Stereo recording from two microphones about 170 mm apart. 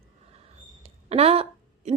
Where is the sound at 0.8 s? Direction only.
35° right (ahead or behind).